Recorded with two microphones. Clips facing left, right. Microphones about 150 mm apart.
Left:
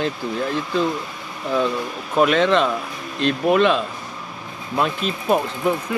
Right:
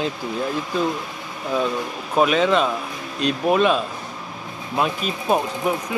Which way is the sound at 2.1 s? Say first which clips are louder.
Left 1 dB; 10° right (ahead or behind).